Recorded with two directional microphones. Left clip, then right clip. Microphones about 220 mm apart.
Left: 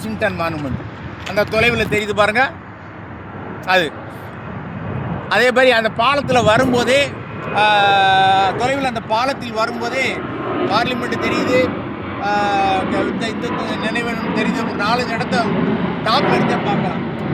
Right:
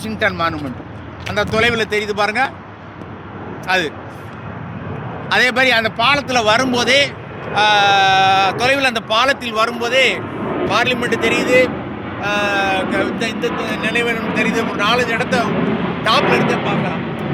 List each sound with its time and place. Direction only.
0.0 s a man's voice: 25° left (ahead or behind); by 2.5 s 45° left (ahead or behind)
3.7 s speech: 45° left (ahead or behind)
5.3 s a man's voice: 35° left (ahead or behind); by 10.2 s 10° right (ahead or behind)
10.4 s vehicle: 50° left (ahead or behind)
10.7 s speech: 5° right (ahead or behind)
13.5 s a man's voice: 35° left (ahead or behind)
13.8 s speech: 10° right (ahead or behind)
14.3 s a man's voice: 35° left (ahead or behind)
14.8 s speech: 10° right (ahead or behind)
15.4 s vehicle: 30° left (ahead or behind)
16.2 s speech: 25° left (ahead or behind)